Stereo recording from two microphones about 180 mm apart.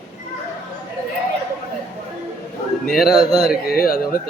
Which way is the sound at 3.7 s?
55° left (ahead or behind).